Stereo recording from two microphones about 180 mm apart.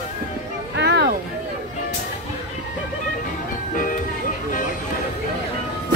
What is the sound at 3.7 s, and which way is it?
Music, 50° left (ahead or behind).